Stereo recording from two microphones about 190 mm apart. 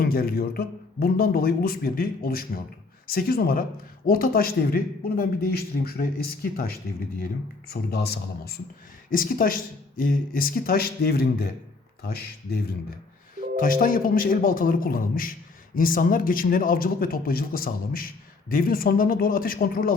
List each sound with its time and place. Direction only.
0.0 s a man's voice: 50° left (ahead or behind)
7.7 s a man's voice: 55° left (ahead or behind)
9.0 s a man's voice: 45° left (ahead or behind)
13.6 s a man's voice: 45° left (ahead or behind)